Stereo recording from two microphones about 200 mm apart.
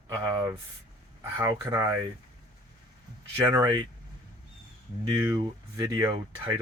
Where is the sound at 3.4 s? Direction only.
20° right (ahead or behind).